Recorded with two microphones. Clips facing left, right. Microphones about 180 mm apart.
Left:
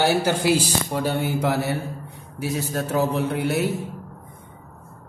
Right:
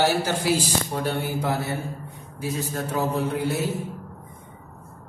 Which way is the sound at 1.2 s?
75° left (ahead or behind).